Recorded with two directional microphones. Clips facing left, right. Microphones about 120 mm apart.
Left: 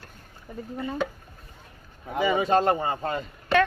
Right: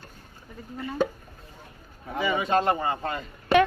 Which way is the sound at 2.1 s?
30° left (ahead or behind).